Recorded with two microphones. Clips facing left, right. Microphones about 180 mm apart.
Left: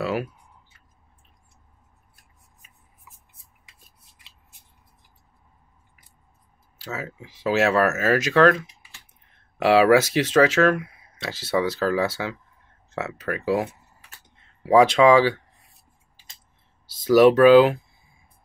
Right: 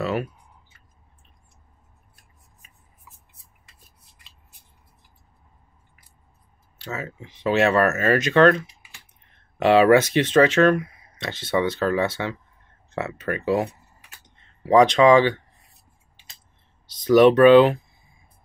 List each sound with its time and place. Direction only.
0.0 s clicking: 5° left (ahead or behind)
6.8 s speech: centre (ahead or behind)
17.0 s speech: 5° left (ahead or behind)